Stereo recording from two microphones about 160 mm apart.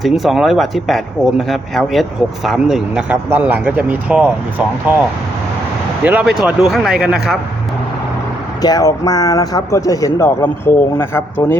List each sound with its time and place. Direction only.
0.0 s speech: centre (ahead or behind)
6.1 s speech: 5° right (ahead or behind)
8.6 s speech: 25° left (ahead or behind)